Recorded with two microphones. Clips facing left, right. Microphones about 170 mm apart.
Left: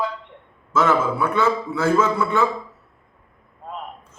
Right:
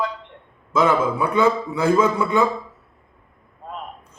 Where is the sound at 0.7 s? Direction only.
15° right (ahead or behind).